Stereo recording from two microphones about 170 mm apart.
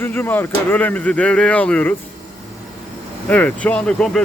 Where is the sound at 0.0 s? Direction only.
10° left (ahead or behind).